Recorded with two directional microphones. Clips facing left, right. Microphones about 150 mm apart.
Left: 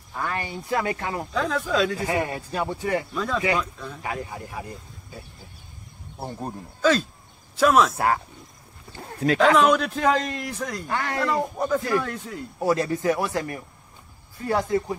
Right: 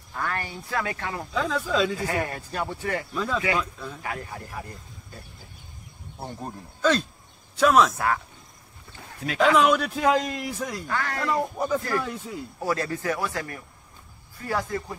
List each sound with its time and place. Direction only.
0.1 s speech: 10° left (ahead or behind)
1.3 s a man's voice: centre (ahead or behind); by 3.1 s 15° left (ahead or behind)
3.2 s a man's voice: centre (ahead or behind)
4.0 s a man's voice: 15° left (ahead or behind)
8.9 s speech: 40° left (ahead or behind)
9.6 s a man's voice: centre (ahead or behind)
10.9 s speech: 25° left (ahead or behind)
11.1 s a man's voice: centre (ahead or behind)
12.5 s speech: 15° left (ahead or behind)